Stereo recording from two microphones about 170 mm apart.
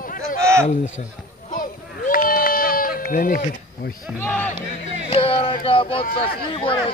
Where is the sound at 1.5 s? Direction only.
55° left (ahead or behind).